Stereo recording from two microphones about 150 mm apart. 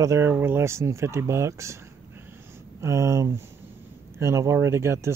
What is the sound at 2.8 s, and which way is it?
Speech, 20° right (ahead or behind).